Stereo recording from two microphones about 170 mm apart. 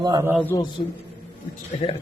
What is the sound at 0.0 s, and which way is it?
Speech, 20° right (ahead or behind).